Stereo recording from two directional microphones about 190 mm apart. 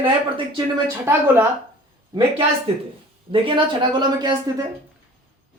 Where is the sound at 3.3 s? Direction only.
25° right (ahead or behind).